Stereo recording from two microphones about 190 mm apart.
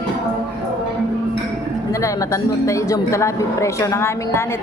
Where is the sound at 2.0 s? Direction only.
15° left (ahead or behind).